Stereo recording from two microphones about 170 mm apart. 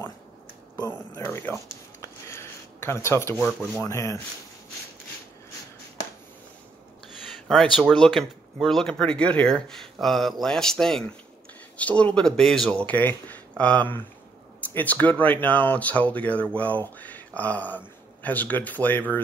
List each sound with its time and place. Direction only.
0.7 s a sound: 20° left (ahead or behind)
3.8 s speech: 20° left (ahead or behind)
7.4 s speech: centre (ahead or behind)